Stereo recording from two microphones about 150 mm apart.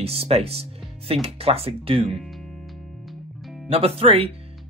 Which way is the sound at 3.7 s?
40° right (ahead or behind).